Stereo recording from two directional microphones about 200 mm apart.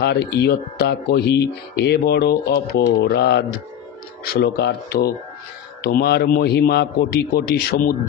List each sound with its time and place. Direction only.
0.3 s a man's voice: 55° left (ahead or behind)